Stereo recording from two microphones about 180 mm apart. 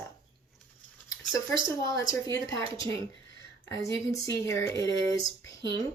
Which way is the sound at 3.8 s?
20° left (ahead or behind).